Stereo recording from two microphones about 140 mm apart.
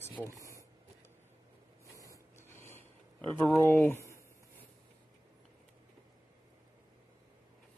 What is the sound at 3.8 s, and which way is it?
Speech, 20° left (ahead or behind).